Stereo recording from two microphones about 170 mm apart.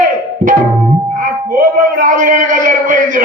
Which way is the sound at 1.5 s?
50° right (ahead or behind).